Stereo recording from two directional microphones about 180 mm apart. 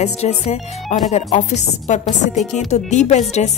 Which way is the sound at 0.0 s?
35° left (ahead or behind).